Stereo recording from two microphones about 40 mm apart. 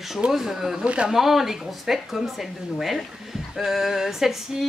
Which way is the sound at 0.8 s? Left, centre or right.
Right.